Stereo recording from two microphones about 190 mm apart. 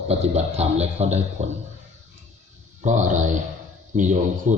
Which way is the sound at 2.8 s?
40° right (ahead or behind).